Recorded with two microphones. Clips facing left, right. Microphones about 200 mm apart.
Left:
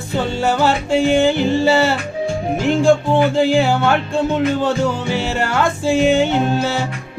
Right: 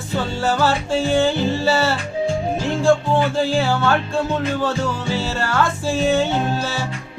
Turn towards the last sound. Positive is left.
turn(degrees=15)  # may be behind; listen again after turning